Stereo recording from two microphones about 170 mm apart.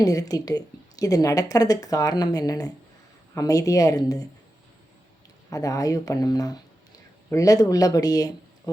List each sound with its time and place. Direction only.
0.0 s a woman's voice: 20° left (ahead or behind)
5.5 s a woman's voice: 20° left (ahead or behind)